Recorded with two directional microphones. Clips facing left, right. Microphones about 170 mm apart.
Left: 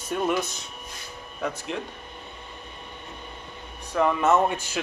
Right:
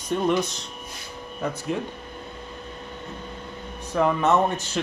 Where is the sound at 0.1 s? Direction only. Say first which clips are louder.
Right 3 dB; 5° left (ahead or behind).